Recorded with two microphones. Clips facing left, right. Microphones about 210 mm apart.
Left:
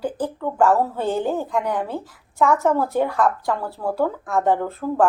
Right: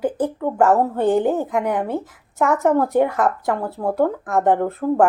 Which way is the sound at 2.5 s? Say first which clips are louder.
Right 4 dB; 20° right (ahead or behind).